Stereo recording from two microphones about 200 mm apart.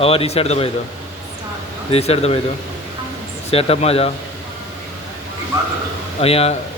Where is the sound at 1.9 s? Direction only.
30° left (ahead or behind).